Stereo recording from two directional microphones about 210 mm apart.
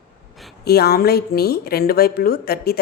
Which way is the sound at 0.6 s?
50° left (ahead or behind).